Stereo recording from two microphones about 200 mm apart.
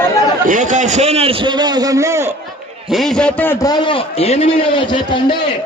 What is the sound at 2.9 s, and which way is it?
A man's voice, centre (ahead or behind).